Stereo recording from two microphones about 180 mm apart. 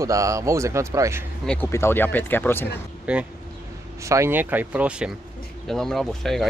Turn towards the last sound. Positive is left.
turn(degrees=0)  # may be behind; listen again after turning